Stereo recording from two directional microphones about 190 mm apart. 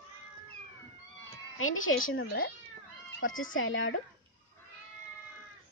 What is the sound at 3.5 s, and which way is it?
Speech, 90° left.